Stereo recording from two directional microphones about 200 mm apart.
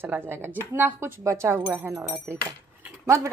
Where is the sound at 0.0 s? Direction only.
10° right (ahead or behind).